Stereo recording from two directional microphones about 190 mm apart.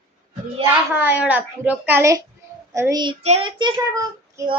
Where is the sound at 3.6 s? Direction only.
20° right (ahead or behind).